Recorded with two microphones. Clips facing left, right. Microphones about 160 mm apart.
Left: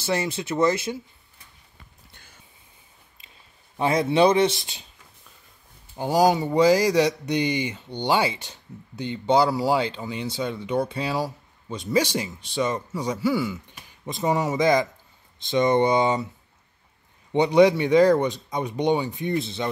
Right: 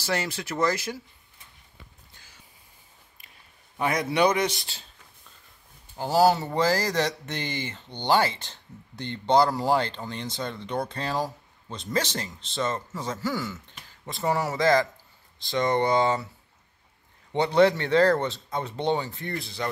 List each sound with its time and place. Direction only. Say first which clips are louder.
0.0 s speech: left 3 dB; 25° left (ahead or behind)
3.2 s a sound: left 3 dB; 25° left (ahead or behind)
3.7 s speech: left 5 dB; 25° left (ahead or behind)
5.9 s speech: left 1 dB; 15° left (ahead or behind)
17.3 s speech: left 3 dB; 15° left (ahead or behind)